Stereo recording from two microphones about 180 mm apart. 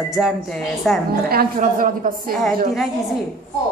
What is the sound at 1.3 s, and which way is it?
A woman's voice, 55° right (ahead or behind).